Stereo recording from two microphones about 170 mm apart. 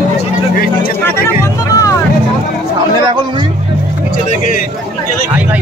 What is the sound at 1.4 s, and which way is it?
Music, 20° left (ahead or behind).